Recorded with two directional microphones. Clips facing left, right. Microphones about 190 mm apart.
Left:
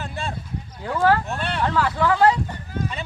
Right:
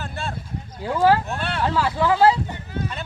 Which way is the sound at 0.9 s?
10° right (ahead or behind).